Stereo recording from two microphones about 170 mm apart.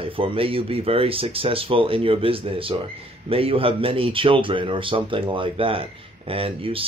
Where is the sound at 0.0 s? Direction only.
30° right (ahead or behind).